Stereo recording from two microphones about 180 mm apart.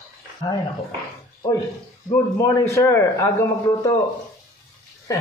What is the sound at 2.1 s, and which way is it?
A man's voice, 15° left (ahead or behind).